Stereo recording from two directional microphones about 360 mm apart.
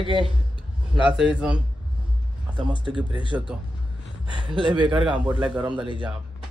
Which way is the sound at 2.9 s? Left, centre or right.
Centre.